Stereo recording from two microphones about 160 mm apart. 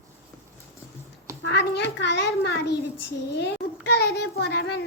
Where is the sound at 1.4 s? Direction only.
90° left.